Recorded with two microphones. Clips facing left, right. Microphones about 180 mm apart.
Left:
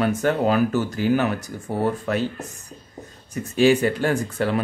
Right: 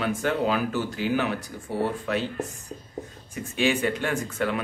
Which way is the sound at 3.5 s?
35° left (ahead or behind).